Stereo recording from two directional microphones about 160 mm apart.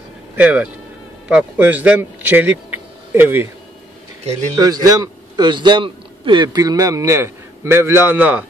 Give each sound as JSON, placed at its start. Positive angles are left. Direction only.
{"t": 0.4, "sound": "a man's voice", "side_deg": -10}
{"t": 4.6, "sound": "a man's voice", "side_deg": -25}